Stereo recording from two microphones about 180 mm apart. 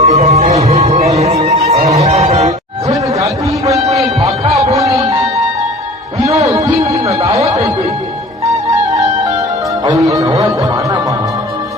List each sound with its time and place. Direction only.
0.0 s music: 40° right (ahead or behind)
2.9 s a sound: 20° right (ahead or behind)
4.7 s music: 20° right (ahead or behind)
6.2 s music: 20° right (ahead or behind)
7.1 s alarm: 35° right (ahead or behind)
9.8 s music: 20° right (ahead or behind)